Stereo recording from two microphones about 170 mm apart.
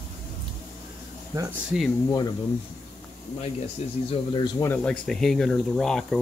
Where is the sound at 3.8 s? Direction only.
40° left (ahead or behind).